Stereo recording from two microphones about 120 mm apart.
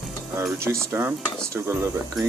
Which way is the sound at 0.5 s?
20° right (ahead or behind).